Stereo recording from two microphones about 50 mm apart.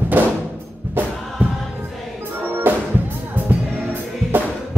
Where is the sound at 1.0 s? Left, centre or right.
Right.